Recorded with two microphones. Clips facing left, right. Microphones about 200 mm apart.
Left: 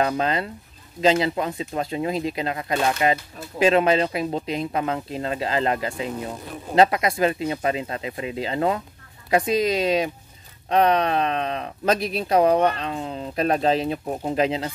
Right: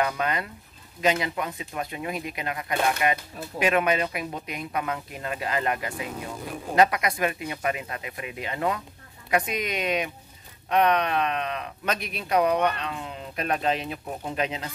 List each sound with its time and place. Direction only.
0.0 s speech: 30° left (ahead or behind)